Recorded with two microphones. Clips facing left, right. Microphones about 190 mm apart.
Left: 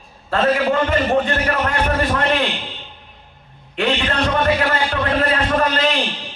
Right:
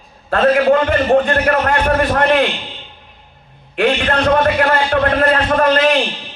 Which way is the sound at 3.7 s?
55° right (ahead or behind).